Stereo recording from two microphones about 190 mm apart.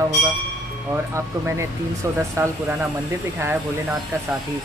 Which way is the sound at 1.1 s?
15° right (ahead or behind).